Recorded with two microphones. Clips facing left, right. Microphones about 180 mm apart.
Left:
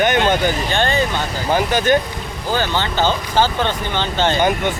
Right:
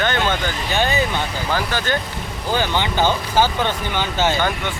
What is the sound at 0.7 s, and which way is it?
Speech, 5° right (ahead or behind).